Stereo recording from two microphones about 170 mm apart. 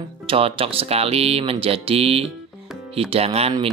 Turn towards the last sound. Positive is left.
turn(degrees=-35)  # may be behind; listen again after turning